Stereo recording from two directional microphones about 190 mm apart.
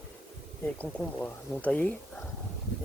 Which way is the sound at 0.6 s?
5° left (ahead or behind).